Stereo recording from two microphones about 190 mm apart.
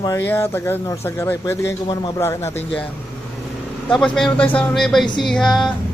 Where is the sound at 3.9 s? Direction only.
5° left (ahead or behind).